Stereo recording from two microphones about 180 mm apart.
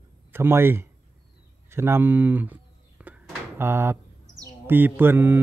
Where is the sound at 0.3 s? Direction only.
15° right (ahead or behind).